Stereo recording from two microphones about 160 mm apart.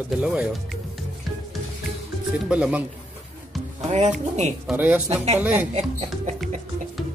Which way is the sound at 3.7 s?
45° right (ahead or behind).